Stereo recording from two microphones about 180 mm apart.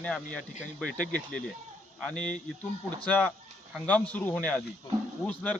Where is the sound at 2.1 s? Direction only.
5° left (ahead or behind).